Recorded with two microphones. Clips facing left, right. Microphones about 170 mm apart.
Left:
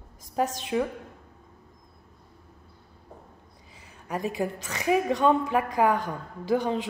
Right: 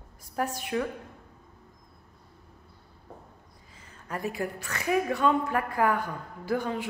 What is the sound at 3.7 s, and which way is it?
A woman's voice, 15° left (ahead or behind).